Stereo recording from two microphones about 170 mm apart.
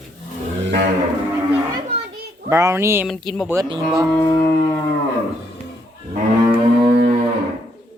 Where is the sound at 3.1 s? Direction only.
Centre (ahead or behind).